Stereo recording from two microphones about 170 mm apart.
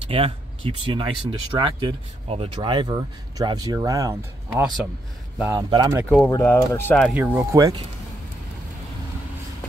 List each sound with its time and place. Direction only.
0.1 s speech: 35° right (ahead or behind)
6.0 s speech: 10° left (ahead or behind)
7.2 s speech: 10° right (ahead or behind)